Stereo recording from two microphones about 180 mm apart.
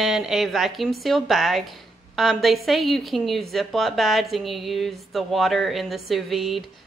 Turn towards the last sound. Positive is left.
turn(degrees=0)  # may be behind; listen again after turning